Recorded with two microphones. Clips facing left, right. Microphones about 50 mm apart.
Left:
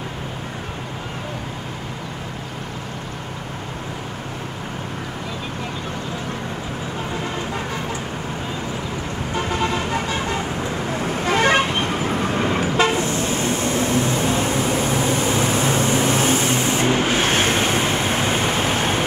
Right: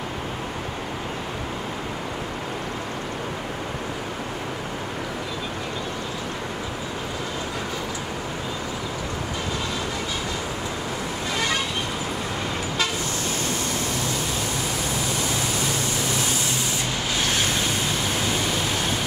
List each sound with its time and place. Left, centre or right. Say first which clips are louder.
9.5 s music: left 9 dB; left
11.2 s toot: left 9 dB; left